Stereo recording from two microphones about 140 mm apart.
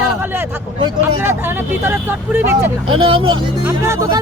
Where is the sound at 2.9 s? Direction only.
40° right (ahead or behind).